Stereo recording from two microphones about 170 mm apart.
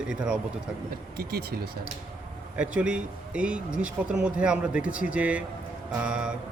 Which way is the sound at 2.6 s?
5° right (ahead or behind).